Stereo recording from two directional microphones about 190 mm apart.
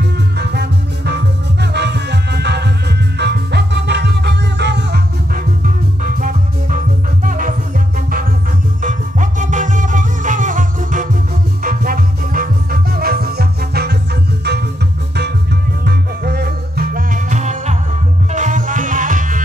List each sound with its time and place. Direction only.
0.4 s music: 60° right (ahead or behind)
6.1 s music: 45° right (ahead or behind)
8.8 s music: 40° right (ahead or behind)
15.8 s music: 60° right (ahead or behind)